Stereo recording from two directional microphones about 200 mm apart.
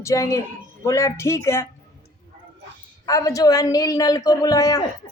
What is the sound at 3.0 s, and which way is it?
Speech, 15° left (ahead or behind).